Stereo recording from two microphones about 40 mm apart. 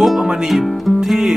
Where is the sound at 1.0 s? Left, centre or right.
Centre.